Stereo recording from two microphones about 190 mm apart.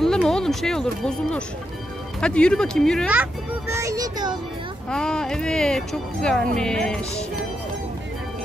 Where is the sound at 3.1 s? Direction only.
10° right (ahead or behind).